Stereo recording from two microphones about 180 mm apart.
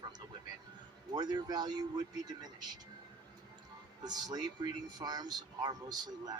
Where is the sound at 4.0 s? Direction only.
25° right (ahead or behind).